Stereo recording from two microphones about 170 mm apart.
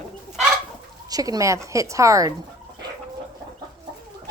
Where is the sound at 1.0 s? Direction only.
20° right (ahead or behind).